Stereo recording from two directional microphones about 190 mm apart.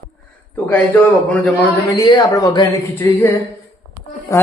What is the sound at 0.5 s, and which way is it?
Speech, 5° left (ahead or behind).